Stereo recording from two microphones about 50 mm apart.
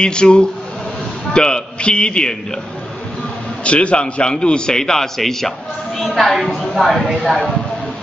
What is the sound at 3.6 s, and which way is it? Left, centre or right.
A man's voice, left.